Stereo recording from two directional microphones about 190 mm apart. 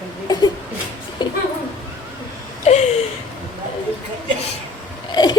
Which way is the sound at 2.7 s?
35° left (ahead or behind).